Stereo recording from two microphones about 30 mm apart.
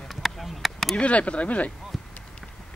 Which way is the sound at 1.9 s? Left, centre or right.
Centre.